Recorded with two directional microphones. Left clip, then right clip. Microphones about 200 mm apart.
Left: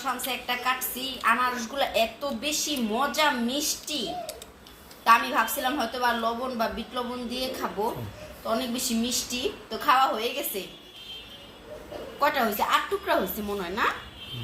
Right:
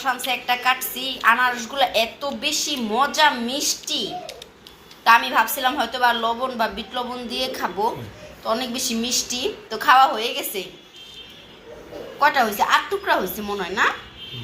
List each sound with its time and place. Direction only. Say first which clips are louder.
0.3 s a woman's voice: right 8 dB; 5° right (ahead or behind)
5.0 s a woman's voice: right 5 dB; 5° right (ahead or behind)
12.2 s a woman's voice: right 6 dB; centre (ahead or behind)